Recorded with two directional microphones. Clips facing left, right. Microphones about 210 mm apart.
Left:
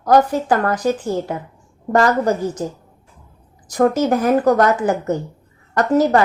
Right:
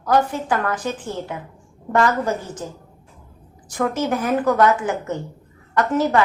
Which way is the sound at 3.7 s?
40° left (ahead or behind).